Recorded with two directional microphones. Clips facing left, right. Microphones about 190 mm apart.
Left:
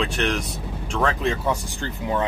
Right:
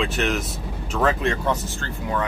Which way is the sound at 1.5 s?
20° left (ahead or behind).